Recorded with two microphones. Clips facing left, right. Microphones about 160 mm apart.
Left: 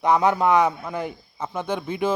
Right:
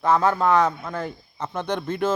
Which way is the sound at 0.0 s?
15° left (ahead or behind).